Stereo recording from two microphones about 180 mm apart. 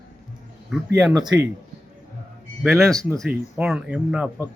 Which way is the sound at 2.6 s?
Centre (ahead or behind).